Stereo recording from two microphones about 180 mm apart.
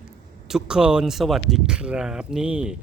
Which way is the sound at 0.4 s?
5° right (ahead or behind).